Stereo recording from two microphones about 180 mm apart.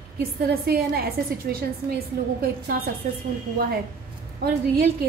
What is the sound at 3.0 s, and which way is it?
Speech, 50° right (ahead or behind).